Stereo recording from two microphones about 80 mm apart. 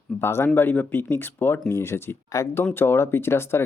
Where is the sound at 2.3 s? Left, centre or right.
Left.